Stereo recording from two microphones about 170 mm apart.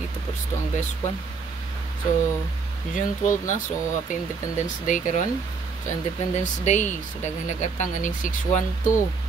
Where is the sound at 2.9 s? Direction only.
45° left (ahead or behind).